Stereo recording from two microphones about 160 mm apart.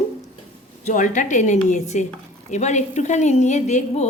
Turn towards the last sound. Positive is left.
turn(degrees=45)  # may be behind; listen again after turning